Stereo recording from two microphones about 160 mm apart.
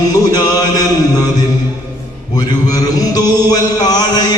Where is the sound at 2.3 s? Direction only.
25° left (ahead or behind).